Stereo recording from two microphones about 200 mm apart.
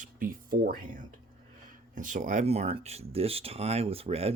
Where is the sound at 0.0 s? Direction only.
45° right (ahead or behind).